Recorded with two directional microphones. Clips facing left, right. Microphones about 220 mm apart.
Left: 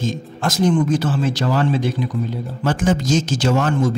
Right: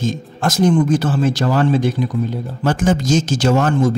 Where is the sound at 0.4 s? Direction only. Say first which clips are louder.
Right 3 dB; 50° right (ahead or behind).